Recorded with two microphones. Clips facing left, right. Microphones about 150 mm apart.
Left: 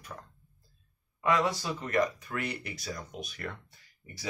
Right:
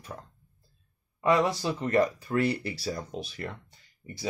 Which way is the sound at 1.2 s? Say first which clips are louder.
Right 4 dB; 30° right (ahead or behind).